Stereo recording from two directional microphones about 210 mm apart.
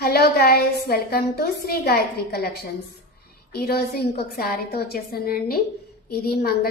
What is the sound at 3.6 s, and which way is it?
A woman's voice, 50° left (ahead or behind).